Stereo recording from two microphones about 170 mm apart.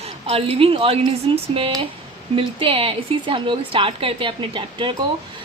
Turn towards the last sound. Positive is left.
turn(degrees=-30)  # may be behind; listen again after turning